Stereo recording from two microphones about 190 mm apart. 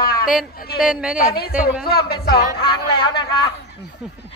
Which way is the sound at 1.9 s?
55° left (ahead or behind).